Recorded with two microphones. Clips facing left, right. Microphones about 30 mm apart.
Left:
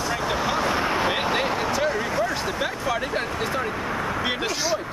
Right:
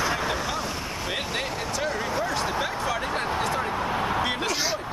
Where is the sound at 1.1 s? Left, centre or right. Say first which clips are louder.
Left 6 dB; centre.